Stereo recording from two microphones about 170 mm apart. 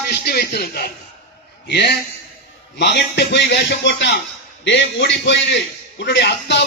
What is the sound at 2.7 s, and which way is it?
A man's voice, 85° left.